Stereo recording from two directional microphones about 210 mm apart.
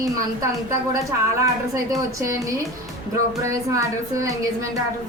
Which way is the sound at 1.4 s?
15° right (ahead or behind).